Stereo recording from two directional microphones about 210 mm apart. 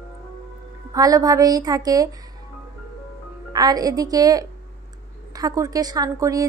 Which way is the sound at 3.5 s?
20° right (ahead or behind).